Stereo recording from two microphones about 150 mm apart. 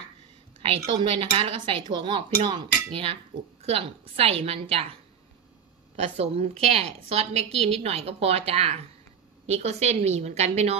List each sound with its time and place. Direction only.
0.6 s a woman's voice: 40° right (ahead or behind)
5.9 s a woman's voice: 40° right (ahead or behind)